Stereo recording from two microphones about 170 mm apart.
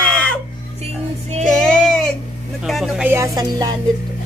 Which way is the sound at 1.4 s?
5° left (ahead or behind).